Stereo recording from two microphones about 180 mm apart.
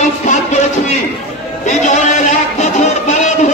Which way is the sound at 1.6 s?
45° left (ahead or behind).